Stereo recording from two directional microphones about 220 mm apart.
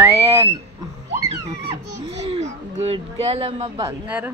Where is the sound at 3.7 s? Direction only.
10° right (ahead or behind).